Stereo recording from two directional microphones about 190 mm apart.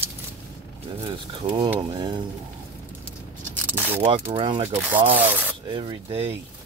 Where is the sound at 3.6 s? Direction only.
10° right (ahead or behind).